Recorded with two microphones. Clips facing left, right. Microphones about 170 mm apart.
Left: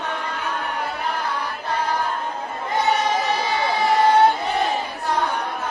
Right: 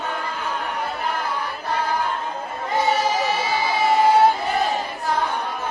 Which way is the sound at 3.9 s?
Centre (ahead or behind).